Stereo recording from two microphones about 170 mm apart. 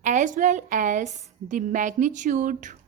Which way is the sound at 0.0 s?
45° right (ahead or behind).